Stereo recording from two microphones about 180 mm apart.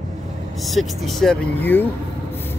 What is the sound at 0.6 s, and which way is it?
Speech, centre (ahead or behind).